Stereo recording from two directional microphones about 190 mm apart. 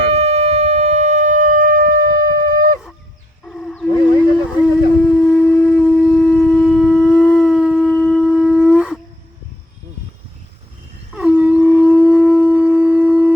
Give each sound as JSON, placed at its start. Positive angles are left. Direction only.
{"t": 0.1, "sound": "shofar", "side_deg": -35}
{"t": 3.4, "sound": "a sound", "side_deg": 5}
{"t": 11.1, "sound": "shofar", "side_deg": -5}